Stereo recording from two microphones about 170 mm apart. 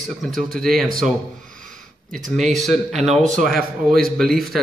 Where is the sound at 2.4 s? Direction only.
Centre (ahead or behind).